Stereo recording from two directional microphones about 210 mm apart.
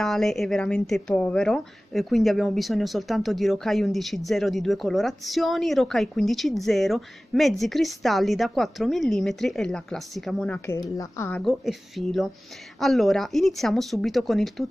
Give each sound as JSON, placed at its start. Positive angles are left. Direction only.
{"t": 0.0, "sound": "a woman's voice", "side_deg": 0}
{"t": 11.4, "sound": "a woman's voice", "side_deg": 0}